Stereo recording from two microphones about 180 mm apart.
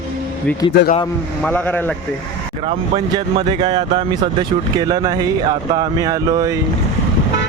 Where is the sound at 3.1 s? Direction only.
25° right (ahead or behind).